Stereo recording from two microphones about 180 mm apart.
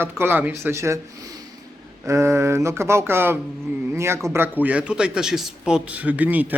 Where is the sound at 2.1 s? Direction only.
15° right (ahead or behind).